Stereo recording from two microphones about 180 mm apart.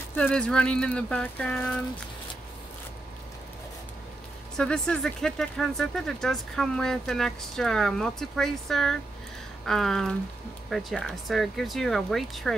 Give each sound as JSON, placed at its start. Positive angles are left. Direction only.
{"t": 0.1, "sound": "speech", "side_deg": 5}
{"t": 4.6, "sound": "speech", "side_deg": 5}